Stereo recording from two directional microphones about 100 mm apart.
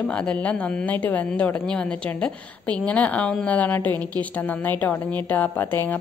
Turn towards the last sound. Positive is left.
turn(degrees=20)  # may be behind; listen again after turning